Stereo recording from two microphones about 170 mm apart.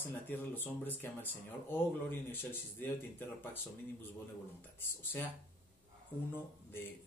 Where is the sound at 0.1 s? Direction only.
10° left (ahead or behind).